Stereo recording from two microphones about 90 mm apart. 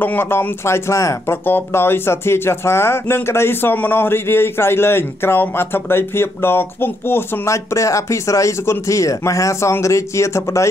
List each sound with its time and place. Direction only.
0.0 s speech: 20° left (ahead or behind)